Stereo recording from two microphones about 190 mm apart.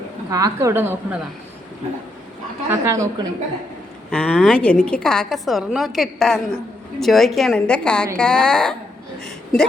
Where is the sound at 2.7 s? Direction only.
15° right (ahead or behind).